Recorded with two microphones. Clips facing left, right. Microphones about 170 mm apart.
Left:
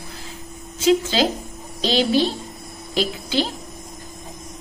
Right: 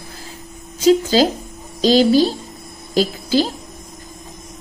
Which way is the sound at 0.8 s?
40° right (ahead or behind).